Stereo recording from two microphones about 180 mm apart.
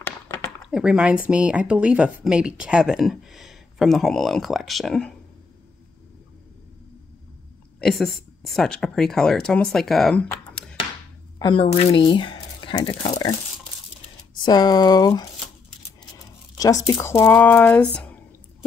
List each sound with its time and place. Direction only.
0.0 s a sound: 15° left (ahead or behind)
0.7 s speech: 5° right (ahead or behind)
7.8 s speech: centre (ahead or behind)
11.3 s speech: 25° left (ahead or behind)
14.3 s speech: 25° left (ahead or behind)
16.5 s speech: 20° left (ahead or behind)